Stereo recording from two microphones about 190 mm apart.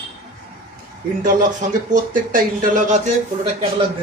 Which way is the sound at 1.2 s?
45° right (ahead or behind).